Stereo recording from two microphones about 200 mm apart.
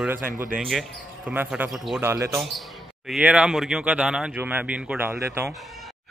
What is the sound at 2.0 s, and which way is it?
A man's voice, 10° right (ahead or behind).